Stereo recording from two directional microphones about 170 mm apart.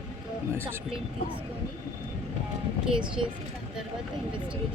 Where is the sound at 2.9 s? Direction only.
30° right (ahead or behind).